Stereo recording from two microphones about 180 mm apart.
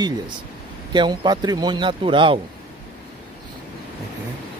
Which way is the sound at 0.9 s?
25° right (ahead or behind).